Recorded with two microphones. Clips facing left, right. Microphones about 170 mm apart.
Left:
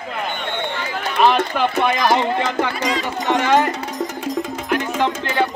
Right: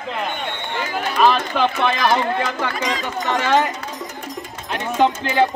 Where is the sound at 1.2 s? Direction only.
10° left (ahead or behind).